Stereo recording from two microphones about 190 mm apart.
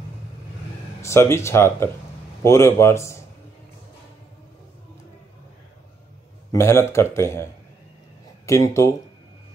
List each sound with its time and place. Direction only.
1.0 s speech: 15° left (ahead or behind)
6.5 s speech: 15° left (ahead or behind)
8.5 s speech: 15° left (ahead or behind)